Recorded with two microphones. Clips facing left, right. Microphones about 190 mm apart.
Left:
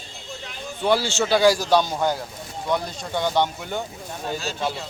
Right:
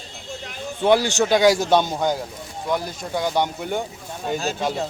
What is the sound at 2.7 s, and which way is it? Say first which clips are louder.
Speech: right 1 dB; 10° right (ahead or behind).